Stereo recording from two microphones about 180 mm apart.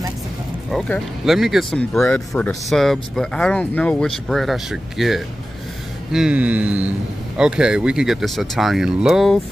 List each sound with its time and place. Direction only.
0.7 s speech: 5° left (ahead or behind)